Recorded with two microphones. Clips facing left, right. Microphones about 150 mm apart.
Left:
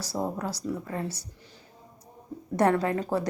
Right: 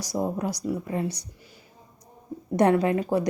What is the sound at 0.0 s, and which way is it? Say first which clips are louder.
Speech: right 3 dB; 15° right (ahead or behind).